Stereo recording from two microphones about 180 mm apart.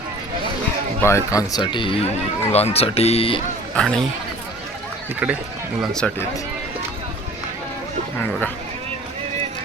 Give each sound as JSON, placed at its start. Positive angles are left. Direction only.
{"t": 1.0, "sound": "speech", "side_deg": 15}
{"t": 3.8, "sound": "speech", "side_deg": 5}
{"t": 5.8, "sound": "speech", "side_deg": 5}
{"t": 8.2, "sound": "speech", "side_deg": 10}